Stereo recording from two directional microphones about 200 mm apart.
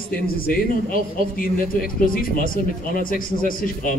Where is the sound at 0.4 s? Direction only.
45° left (ahead or behind).